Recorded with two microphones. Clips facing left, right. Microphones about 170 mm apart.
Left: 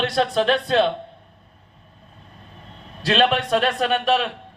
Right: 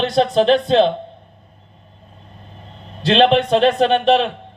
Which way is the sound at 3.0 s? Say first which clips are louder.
Right 6 dB; 30° right (ahead or behind).